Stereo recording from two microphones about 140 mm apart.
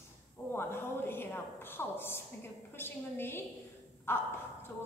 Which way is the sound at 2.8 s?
15° left (ahead or behind).